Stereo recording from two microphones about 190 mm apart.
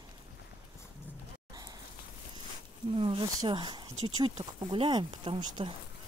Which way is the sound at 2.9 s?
30° right (ahead or behind).